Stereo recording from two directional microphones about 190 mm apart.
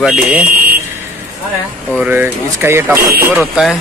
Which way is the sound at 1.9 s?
10° right (ahead or behind).